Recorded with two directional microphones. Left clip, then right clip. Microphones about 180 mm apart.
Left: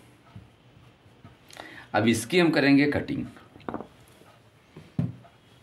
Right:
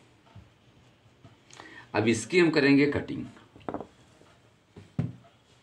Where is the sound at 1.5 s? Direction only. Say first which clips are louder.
Left 6 dB; 60° left (ahead or behind).